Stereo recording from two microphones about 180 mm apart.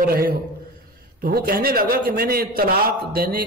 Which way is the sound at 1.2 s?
55° right (ahead or behind).